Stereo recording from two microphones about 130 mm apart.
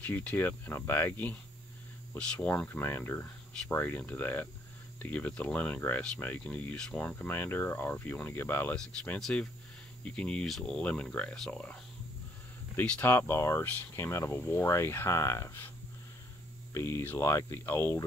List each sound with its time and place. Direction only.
0.0 s speech: 10° left (ahead or behind)
9.2 s speech: 5° left (ahead or behind)
16.7 s speech: 20° left (ahead or behind)